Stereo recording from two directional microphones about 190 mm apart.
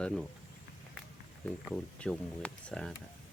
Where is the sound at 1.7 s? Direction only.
5° left (ahead or behind).